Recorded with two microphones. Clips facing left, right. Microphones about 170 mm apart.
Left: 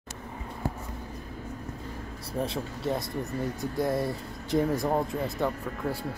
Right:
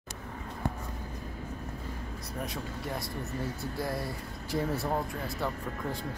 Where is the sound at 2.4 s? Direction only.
25° left (ahead or behind).